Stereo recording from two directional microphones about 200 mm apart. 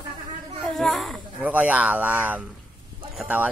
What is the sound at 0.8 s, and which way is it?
Speech, centre (ahead or behind).